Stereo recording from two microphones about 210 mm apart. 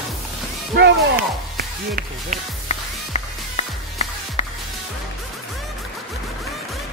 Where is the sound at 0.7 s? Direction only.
50° right (ahead or behind).